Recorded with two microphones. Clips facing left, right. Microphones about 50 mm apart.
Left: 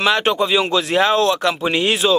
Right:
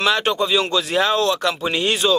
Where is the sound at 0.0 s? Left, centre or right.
Centre.